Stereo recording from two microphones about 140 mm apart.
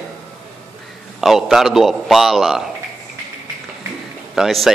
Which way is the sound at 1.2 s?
Centre (ahead or behind).